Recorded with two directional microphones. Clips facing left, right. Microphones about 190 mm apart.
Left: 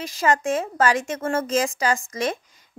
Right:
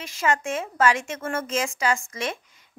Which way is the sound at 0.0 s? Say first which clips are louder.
Left 4 dB; 35° left (ahead or behind).